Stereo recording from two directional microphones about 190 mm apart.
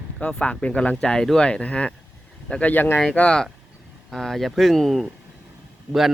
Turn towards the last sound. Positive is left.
turn(degrees=0)  # may be behind; listen again after turning